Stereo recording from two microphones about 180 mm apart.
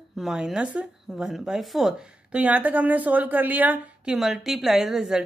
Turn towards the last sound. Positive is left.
turn(degrees=0)  # may be behind; listen again after turning